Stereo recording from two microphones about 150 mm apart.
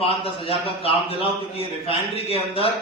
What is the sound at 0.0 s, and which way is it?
A man's voice, 40° left (ahead or behind).